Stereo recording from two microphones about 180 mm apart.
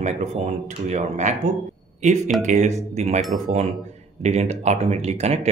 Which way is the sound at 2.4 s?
40° right (ahead or behind).